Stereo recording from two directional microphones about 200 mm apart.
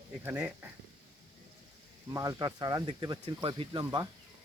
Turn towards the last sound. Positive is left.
turn(degrees=-20)  # may be behind; listen again after turning